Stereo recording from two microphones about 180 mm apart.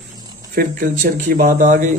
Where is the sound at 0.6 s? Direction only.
55° right (ahead or behind).